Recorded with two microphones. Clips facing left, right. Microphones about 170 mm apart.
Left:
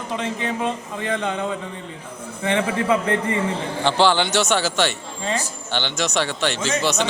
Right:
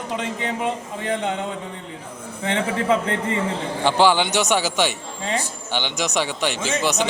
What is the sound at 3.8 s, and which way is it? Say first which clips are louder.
Speech: right 1 dB; 10° right (ahead or behind).